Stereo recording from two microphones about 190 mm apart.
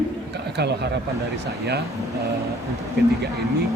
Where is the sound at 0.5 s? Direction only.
60° right (ahead or behind).